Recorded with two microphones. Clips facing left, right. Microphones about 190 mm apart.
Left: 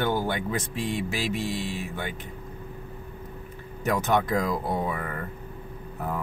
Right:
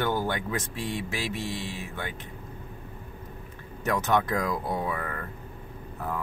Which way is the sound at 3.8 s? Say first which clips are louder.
Left 1 dB; 10° left (ahead or behind).